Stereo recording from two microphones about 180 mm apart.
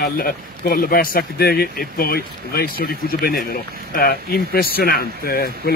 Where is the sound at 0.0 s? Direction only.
55° left (ahead or behind).